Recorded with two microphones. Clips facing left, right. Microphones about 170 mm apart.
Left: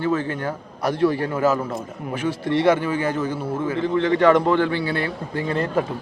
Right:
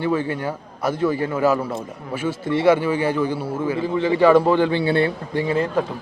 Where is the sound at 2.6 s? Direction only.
10° right (ahead or behind); by 5.1 s 25° right (ahead or behind).